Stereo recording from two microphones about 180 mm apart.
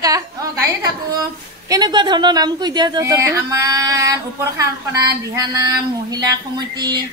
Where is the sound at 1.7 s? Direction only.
25° right (ahead or behind).